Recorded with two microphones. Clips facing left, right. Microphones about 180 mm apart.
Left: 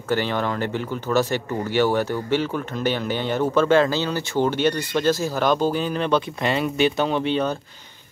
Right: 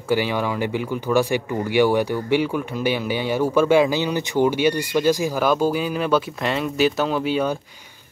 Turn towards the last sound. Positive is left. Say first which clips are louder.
# right 1 dB
turn(degrees=-10)  # may be behind; listen again after turning